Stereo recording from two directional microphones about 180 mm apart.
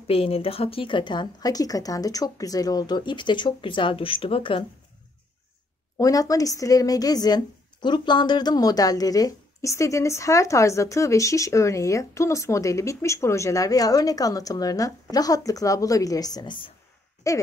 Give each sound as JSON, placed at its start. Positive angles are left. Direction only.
{"t": 0.0, "sound": "speech", "side_deg": 30}
{"t": 5.9, "sound": "speech", "side_deg": 20}